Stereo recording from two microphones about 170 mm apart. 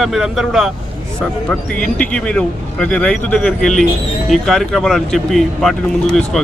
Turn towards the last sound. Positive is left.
turn(degrees=5)  # may be behind; listen again after turning